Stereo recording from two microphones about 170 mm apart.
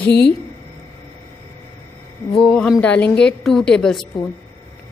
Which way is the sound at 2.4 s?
5° left (ahead or behind).